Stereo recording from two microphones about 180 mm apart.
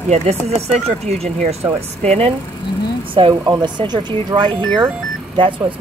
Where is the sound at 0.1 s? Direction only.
35° right (ahead or behind).